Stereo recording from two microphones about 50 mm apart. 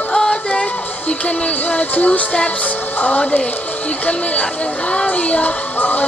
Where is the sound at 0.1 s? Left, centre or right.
Centre.